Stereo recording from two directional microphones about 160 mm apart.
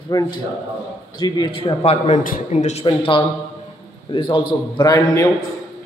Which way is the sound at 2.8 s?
30° left (ahead or behind).